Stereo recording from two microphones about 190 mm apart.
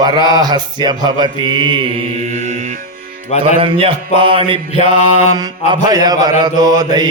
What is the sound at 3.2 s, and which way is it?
Speech, 35° left (ahead or behind).